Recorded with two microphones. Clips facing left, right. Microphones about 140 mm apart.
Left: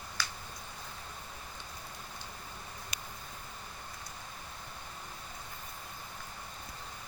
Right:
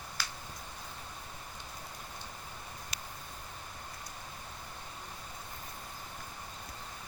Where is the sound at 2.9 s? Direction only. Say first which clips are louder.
Even; 20° left (ahead or behind).